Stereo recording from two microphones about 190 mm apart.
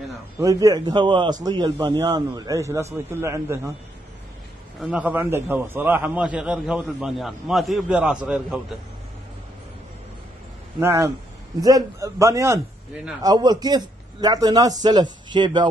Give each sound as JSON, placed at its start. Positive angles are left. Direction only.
{"t": 0.4, "sound": "a man's voice", "side_deg": -20}
{"t": 4.8, "sound": "a man's voice", "side_deg": -5}
{"t": 10.8, "sound": "a man's voice", "side_deg": -15}
{"t": 12.9, "sound": "a man's voice", "side_deg": -5}
{"t": 13.2, "sound": "a man's voice", "side_deg": -20}